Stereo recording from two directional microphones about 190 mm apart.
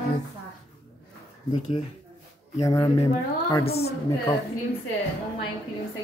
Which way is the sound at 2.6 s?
20° left (ahead or behind).